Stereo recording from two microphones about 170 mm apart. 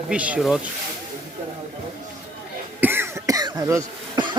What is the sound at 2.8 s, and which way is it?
Cough, 15° right (ahead or behind).